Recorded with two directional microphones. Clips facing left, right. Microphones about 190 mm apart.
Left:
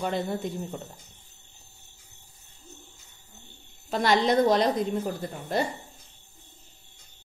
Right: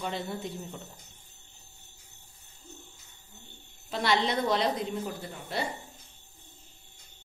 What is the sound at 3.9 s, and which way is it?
A woman's voice, 45° left (ahead or behind).